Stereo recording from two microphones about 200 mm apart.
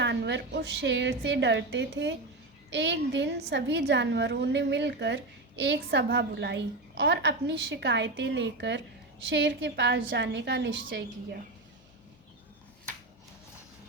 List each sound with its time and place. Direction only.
0.0 s a woman's voice: 60° right (ahead or behind)